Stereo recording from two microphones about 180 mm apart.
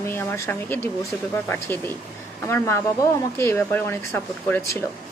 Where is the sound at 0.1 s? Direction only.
10° left (ahead or behind).